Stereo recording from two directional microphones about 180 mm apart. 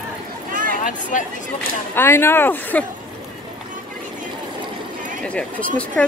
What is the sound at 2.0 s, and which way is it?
Speech, 15° left (ahead or behind).